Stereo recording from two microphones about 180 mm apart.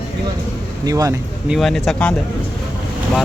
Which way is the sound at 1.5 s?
Centre (ahead or behind).